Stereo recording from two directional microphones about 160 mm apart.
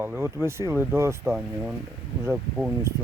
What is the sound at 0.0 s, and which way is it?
Speech, 15° right (ahead or behind).